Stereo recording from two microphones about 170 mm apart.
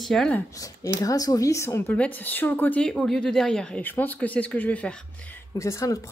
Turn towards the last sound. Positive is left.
turn(degrees=20)  # may be behind; listen again after turning